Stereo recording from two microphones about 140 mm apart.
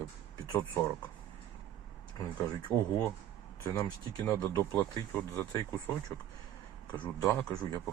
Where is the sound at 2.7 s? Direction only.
10° left (ahead or behind).